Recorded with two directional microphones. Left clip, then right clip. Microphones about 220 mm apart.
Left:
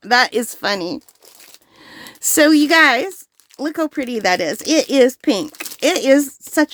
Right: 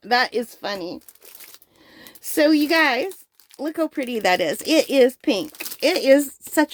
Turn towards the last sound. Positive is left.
turn(degrees=20)  # may be behind; listen again after turning